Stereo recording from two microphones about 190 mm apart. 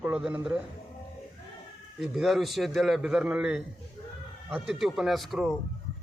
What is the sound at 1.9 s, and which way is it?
A man's voice, centre (ahead or behind).